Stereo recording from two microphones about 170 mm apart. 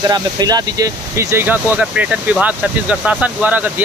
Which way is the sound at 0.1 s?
25° right (ahead or behind).